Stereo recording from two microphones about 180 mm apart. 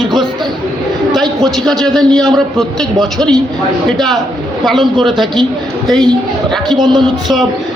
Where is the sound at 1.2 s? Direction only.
20° right (ahead or behind).